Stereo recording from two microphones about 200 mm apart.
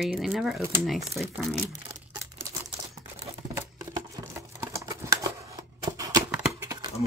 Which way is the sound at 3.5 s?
15° right (ahead or behind).